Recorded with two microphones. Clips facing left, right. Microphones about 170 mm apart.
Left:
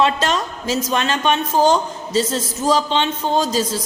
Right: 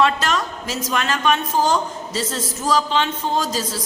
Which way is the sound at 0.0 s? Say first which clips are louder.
Left 1 dB; 25° left (ahead or behind).